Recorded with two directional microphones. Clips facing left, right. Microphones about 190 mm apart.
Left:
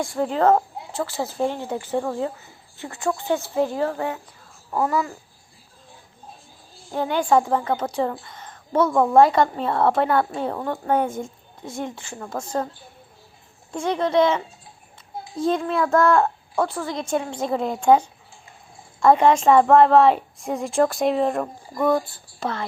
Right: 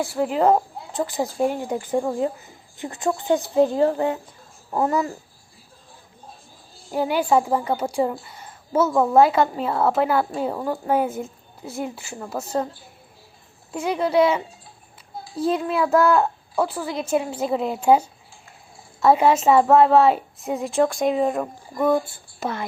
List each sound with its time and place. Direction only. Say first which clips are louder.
0.0 s a woman's voice: even; 5° right (ahead or behind); by 5.1 s 25° right (ahead or behind)
6.9 s a woman's voice: even; 10° right (ahead or behind)
13.7 s a woman's voice: even; 5° right (ahead or behind)